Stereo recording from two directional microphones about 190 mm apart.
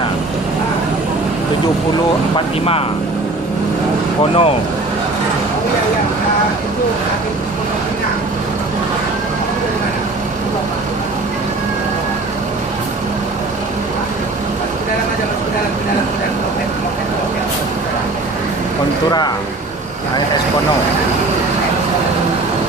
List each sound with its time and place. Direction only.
2.3 s speech: 30° left (ahead or behind)
4.2 s speech: 30° left (ahead or behind)